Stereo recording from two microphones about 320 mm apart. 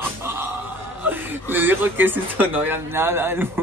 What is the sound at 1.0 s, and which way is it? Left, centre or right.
Speech, centre.